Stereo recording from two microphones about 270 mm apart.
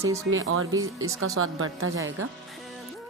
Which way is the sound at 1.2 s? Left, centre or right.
Right.